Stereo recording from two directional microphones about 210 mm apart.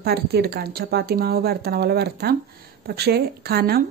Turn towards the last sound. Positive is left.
turn(degrees=-45)  # may be behind; listen again after turning